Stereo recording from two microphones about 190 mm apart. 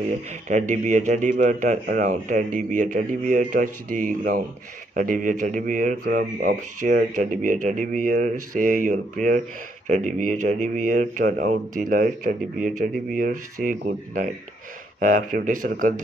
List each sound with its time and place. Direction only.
0.5 s speech: 40° right (ahead or behind)